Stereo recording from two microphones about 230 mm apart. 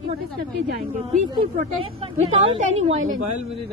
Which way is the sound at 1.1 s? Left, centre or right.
Right.